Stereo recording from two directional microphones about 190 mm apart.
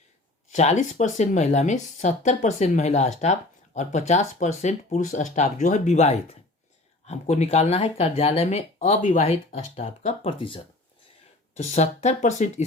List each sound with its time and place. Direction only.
0.5 s speech: 40° left (ahead or behind)